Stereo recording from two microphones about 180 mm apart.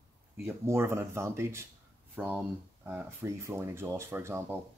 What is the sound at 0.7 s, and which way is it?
Speech, 15° right (ahead or behind).